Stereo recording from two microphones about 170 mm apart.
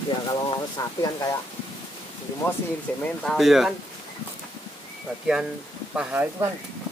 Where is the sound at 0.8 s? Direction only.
20° left (ahead or behind).